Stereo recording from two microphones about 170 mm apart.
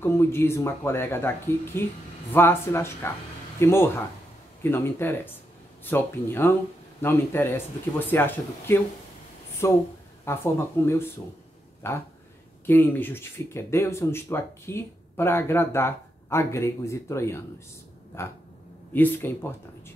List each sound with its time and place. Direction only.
0.0 s speech: 15° left (ahead or behind)